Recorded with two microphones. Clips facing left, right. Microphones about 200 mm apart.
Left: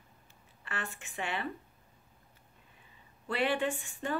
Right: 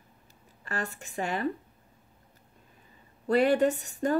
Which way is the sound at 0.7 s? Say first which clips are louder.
Right 6 dB; 40° right (ahead or behind).